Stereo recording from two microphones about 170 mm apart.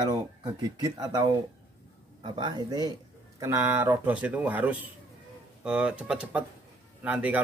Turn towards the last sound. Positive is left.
turn(degrees=-10)  # may be behind; listen again after turning